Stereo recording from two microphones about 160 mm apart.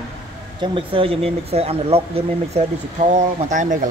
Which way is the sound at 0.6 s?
35° right (ahead or behind).